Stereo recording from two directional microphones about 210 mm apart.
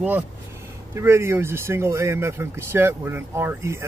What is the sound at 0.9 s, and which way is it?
Speech, 10° right (ahead or behind).